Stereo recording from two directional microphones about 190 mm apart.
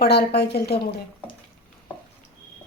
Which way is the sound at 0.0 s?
55° left (ahead or behind).